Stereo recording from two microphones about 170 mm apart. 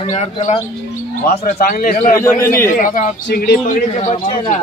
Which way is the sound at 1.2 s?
60° left (ahead or behind).